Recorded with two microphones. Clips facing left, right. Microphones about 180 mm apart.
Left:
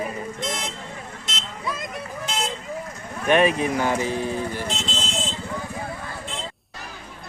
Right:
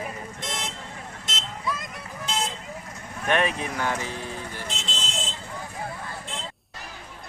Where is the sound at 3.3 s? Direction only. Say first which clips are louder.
Left 6 dB; 10° left (ahead or behind).